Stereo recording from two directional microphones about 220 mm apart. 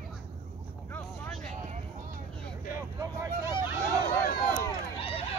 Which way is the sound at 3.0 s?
15° right (ahead or behind).